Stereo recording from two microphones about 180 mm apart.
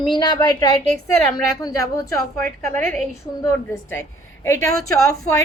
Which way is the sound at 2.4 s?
10° left (ahead or behind).